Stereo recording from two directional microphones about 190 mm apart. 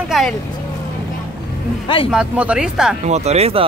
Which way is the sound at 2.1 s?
5° right (ahead or behind).